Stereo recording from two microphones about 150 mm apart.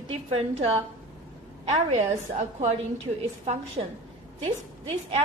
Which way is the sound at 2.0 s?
45° right (ahead or behind).